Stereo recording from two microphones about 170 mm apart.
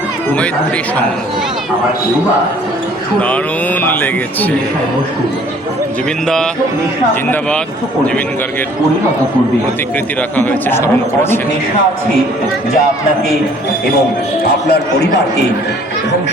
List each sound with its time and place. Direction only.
3.2 s speech: 10° left (ahead or behind)
6.2 s speech: 5° left (ahead or behind)
10.3 s speech: 10° left (ahead or behind)
14.7 s a man's voice: 75° left (ahead or behind)